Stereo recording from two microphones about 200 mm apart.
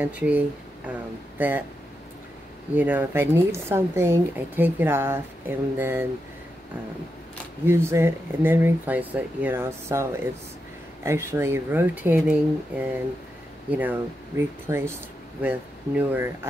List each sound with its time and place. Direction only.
0.0 s speech: 5° right (ahead or behind)
1.4 s speech: 10° right (ahead or behind)
2.7 s speech: 10° right (ahead or behind)
7.6 s speech: 15° right (ahead or behind)